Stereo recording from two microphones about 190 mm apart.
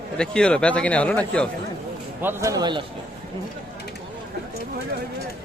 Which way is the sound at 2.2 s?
15° right (ahead or behind).